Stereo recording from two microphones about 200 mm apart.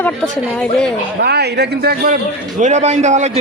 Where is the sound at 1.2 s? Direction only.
55° right (ahead or behind).